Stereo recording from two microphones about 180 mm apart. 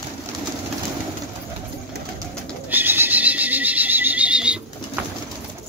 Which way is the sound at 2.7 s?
10° right (ahead or behind).